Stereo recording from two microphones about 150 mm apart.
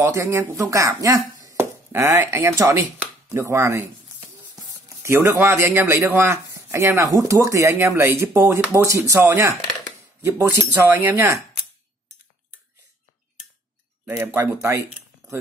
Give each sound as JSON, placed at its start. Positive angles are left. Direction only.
{"t": 0.0, "sound": "speech", "side_deg": -20}
{"t": 3.0, "sound": "chopping", "side_deg": -15}
{"t": 5.0, "sound": "speech", "side_deg": -15}
{"t": 14.0, "sound": "speech", "side_deg": -15}